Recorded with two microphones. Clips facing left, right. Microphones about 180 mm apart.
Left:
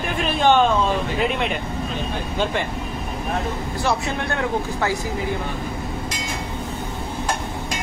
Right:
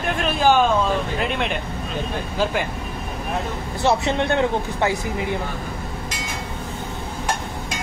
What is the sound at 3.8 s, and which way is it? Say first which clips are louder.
Speech: right 5 dB; 25° right (ahead or behind).